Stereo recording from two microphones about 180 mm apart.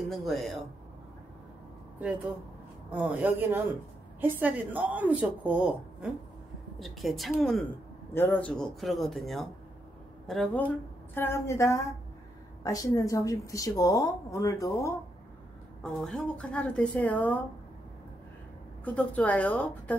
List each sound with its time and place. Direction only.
0.1 s a man's voice: centre (ahead or behind)
2.9 s a woman's voice: 5° right (ahead or behind)
6.8 s a man's voice: centre (ahead or behind)
8.1 s a man's voice: 10° left (ahead or behind)
15.8 s a woman's voice: 5° left (ahead or behind)
18.9 s a woman's voice: 10° left (ahead or behind)